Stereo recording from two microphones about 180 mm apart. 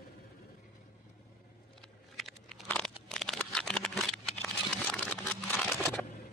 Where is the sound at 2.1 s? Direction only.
Centre (ahead or behind).